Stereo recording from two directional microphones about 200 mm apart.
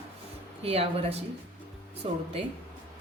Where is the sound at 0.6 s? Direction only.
30° right (ahead or behind).